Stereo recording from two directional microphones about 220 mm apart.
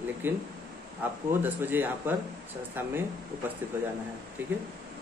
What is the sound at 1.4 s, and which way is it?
A man's voice, 10° right (ahead or behind).